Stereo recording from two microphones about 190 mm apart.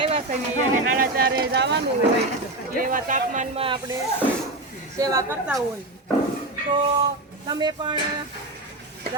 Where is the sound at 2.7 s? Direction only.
50° right (ahead or behind).